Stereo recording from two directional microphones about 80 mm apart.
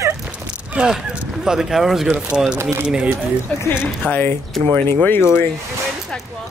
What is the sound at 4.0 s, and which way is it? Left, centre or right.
Speech, left.